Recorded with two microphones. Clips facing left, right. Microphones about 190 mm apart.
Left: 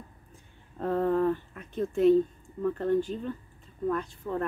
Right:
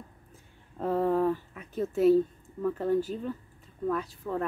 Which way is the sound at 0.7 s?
5° right (ahead or behind).